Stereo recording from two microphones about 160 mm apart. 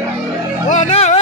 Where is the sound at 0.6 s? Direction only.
45° left (ahead or behind).